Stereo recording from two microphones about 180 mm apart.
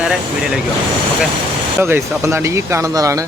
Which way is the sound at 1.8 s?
15° right (ahead or behind).